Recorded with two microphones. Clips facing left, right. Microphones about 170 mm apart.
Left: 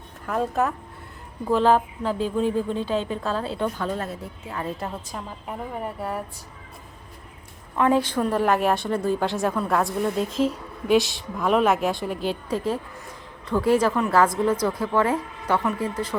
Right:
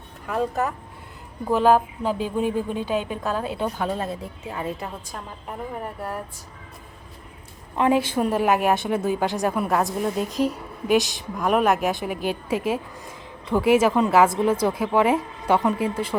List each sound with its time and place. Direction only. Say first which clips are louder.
0.3 s a woman's voice: left 1 dB; centre (ahead or behind)
4.8 s a woman's voice: left 2 dB; centre (ahead or behind)
7.8 s a woman's voice: even; 15° right (ahead or behind)
14.5 s a woman's voice: right 2 dB; 25° right (ahead or behind)
14.8 s a woman's voice: right 2 dB; 10° right (ahead or behind)